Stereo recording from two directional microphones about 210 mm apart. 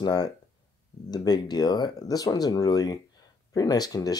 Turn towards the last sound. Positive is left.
turn(degrees=15)  # may be behind; listen again after turning